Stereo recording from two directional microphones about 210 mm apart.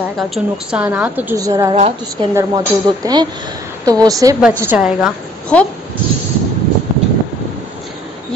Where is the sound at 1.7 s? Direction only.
30° right (ahead or behind).